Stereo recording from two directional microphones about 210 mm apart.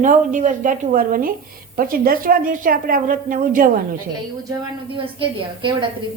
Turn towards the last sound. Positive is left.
turn(degrees=-25)  # may be behind; listen again after turning